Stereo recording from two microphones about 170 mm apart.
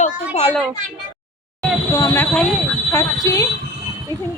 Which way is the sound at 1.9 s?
15° left (ahead or behind).